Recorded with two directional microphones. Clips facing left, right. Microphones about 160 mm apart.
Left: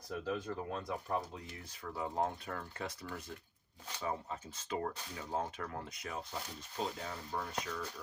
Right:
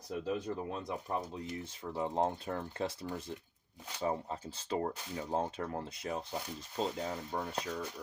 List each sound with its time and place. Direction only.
0.1 s speech: 15° right (ahead or behind)